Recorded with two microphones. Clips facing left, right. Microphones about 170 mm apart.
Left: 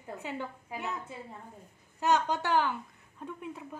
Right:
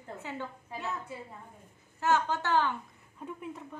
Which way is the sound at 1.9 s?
15° left (ahead or behind).